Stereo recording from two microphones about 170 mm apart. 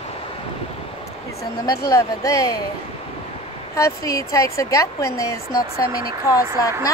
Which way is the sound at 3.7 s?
20° left (ahead or behind).